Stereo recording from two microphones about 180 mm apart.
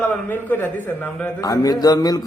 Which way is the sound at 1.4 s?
20° left (ahead or behind).